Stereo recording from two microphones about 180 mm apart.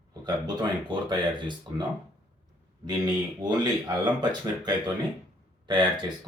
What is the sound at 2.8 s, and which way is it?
Speech, 20° right (ahead or behind).